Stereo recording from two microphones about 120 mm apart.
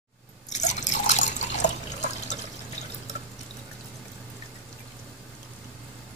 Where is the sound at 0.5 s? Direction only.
80° left.